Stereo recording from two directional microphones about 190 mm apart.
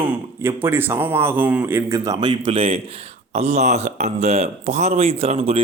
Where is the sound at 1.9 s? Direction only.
20° right (ahead or behind).